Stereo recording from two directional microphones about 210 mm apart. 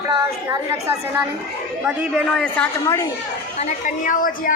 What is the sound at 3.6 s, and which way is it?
Speech, 35° left (ahead or behind).